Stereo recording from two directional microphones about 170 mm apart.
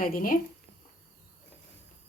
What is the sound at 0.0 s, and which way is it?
Speech, 55° left (ahead or behind).